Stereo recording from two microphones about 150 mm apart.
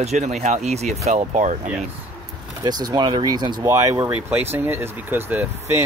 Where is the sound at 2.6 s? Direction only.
25° right (ahead or behind).